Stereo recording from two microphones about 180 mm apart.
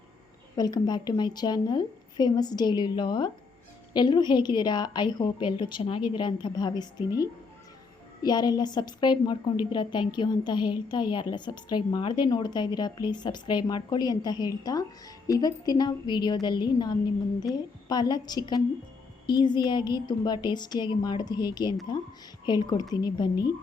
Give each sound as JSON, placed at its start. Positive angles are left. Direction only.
{"t": 0.5, "sound": "a woman's voice", "side_deg": 20}